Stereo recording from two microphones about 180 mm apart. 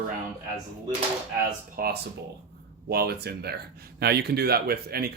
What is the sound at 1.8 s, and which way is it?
Speech, 55° right (ahead or behind).